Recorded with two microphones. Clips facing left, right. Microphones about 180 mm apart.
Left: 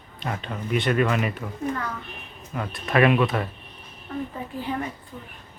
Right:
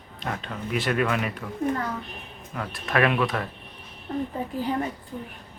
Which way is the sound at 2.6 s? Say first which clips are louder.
Left 3 dB; centre (ahead or behind).